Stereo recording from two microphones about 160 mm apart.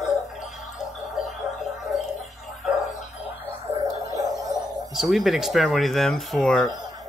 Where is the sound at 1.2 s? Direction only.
55° left (ahead or behind).